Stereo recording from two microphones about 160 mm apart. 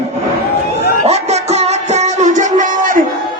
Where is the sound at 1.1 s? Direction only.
40° right (ahead or behind).